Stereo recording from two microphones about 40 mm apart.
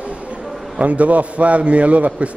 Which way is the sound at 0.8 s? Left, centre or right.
Right.